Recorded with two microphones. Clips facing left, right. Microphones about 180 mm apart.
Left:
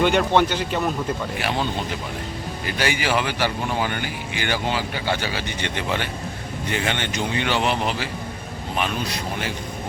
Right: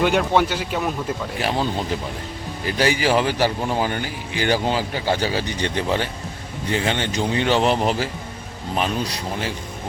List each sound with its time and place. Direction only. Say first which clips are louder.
0.0 s speech: even; 5° right (ahead or behind)
2.6 s speech: right 4 dB; 35° right (ahead or behind)